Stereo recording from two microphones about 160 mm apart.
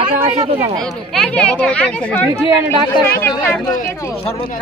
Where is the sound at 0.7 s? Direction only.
5° left (ahead or behind).